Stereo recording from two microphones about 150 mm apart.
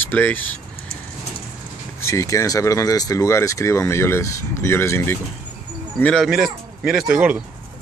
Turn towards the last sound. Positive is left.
turn(degrees=-5)  # may be behind; listen again after turning